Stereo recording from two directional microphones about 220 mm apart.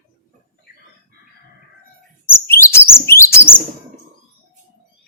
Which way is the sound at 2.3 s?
10° left (ahead or behind).